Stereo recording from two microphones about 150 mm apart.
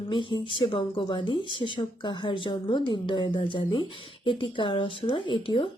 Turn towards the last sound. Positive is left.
turn(degrees=35)  # may be behind; listen again after turning